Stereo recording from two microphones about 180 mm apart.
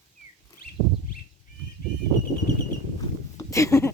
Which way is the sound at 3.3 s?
15° left (ahead or behind).